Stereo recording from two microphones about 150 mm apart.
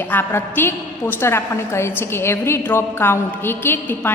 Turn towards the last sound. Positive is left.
turn(degrees=15)  # may be behind; listen again after turning